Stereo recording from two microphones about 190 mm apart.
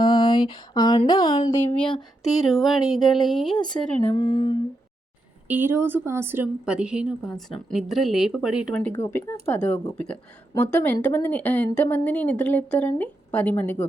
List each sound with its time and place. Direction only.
0.0 s a sound: 25° left (ahead or behind)
1.6 s speech: 5° left (ahead or behind)
4.1 s humming: 25° left (ahead or behind)
5.5 s speech: 10° right (ahead or behind)
8.9 s speech: 15° left (ahead or behind)